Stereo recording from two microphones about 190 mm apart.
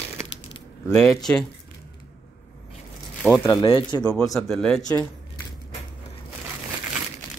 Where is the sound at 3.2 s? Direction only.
5° left (ahead or behind).